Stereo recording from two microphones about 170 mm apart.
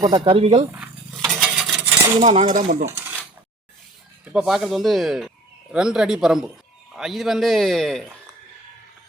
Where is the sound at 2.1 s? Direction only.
40° right (ahead or behind).